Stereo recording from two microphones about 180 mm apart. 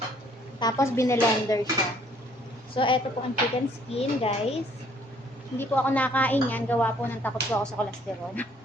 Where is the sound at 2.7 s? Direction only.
30° left (ahead or behind).